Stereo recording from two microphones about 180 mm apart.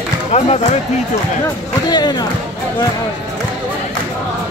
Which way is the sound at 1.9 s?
20° left (ahead or behind).